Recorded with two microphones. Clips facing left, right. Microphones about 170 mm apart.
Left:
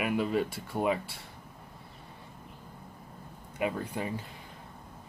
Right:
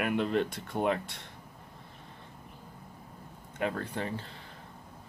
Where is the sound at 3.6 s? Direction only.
10° left (ahead or behind).